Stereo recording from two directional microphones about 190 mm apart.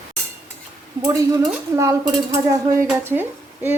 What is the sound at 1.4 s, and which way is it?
Speech, 15° right (ahead or behind).